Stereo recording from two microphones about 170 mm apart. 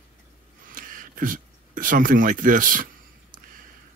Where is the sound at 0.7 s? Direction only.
55° right (ahead or behind).